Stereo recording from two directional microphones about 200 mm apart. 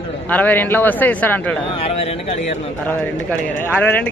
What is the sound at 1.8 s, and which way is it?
Speech, 30° left (ahead or behind).